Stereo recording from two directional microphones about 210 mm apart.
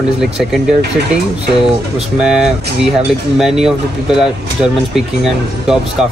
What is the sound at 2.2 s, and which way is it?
Speech, 5° right (ahead or behind).